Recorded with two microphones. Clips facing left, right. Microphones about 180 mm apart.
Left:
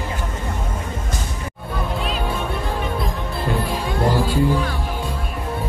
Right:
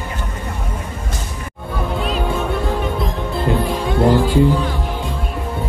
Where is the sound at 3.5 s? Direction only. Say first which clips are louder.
Right 4 dB; 20° right (ahead or behind).